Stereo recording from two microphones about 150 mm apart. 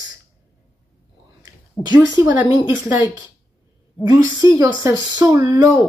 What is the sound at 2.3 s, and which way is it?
Speech, 15° right (ahead or behind).